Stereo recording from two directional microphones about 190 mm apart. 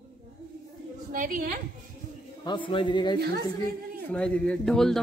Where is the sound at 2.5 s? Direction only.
25° left (ahead or behind).